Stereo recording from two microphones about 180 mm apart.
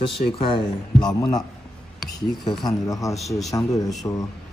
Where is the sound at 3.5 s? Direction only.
20° left (ahead or behind).